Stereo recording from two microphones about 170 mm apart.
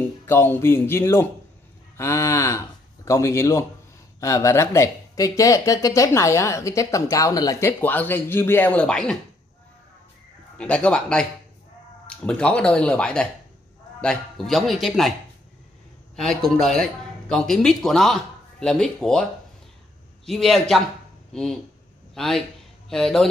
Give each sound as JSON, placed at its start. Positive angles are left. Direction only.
{"t": 0.0, "sound": "a man's voice", "side_deg": 10}
{"t": 10.6, "sound": "speech", "side_deg": 5}
{"t": 16.2, "sound": "speech", "side_deg": 0}
{"t": 20.2, "sound": "a man's voice", "side_deg": 0}